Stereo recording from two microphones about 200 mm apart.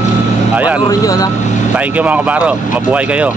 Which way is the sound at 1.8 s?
5° right (ahead or behind).